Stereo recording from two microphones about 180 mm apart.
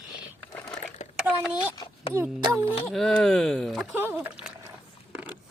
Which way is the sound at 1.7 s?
25° left (ahead or behind).